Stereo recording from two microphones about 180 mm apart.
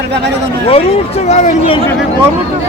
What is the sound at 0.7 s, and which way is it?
Speech, 35° left (ahead or behind).